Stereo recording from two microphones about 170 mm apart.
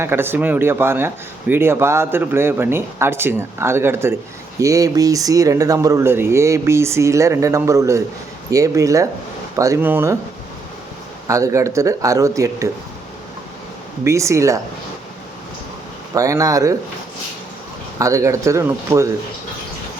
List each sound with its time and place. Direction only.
0.0 s speech: 15° right (ahead or behind)
11.3 s speech: 20° right (ahead or behind)
14.0 s speech: 15° right (ahead or behind)
16.1 s speech: 20° right (ahead or behind)
18.0 s speech: 20° right (ahead or behind)